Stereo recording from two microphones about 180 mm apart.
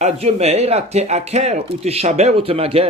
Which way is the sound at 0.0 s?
35° right (ahead or behind).